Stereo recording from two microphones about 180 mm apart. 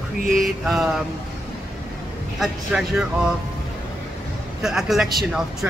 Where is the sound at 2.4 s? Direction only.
Centre (ahead or behind).